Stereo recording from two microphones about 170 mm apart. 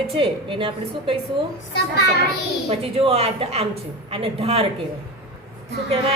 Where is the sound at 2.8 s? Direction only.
35° right (ahead or behind).